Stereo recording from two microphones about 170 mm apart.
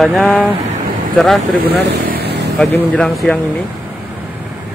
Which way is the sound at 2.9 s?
5° left (ahead or behind).